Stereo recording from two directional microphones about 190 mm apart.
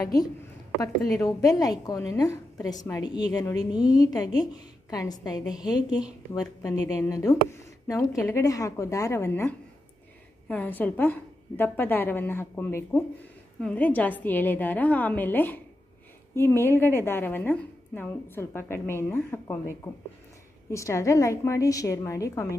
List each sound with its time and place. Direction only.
0.0 s a woman's voice: 20° left (ahead or behind)